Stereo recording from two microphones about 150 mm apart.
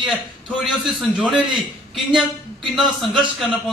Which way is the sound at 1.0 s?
Centre (ahead or behind).